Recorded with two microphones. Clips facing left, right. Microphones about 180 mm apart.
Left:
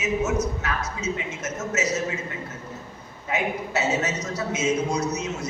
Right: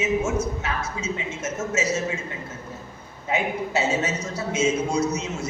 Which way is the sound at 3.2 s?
25° right (ahead or behind).